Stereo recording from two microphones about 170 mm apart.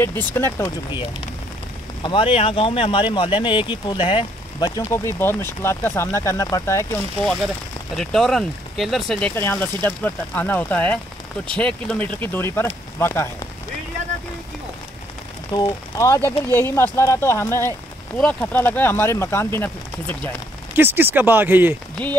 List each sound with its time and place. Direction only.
0.0 s speech: 10° left (ahead or behind)
2.0 s speech: 30° left (ahead or behind); by 6.9 s 15° left (ahead or behind)
7.9 s speech: centre (ahead or behind)
9.3 s speech: 15° left (ahead or behind)
15.5 s speech: 20° left (ahead or behind)
20.7 s speech: 10° right (ahead or behind)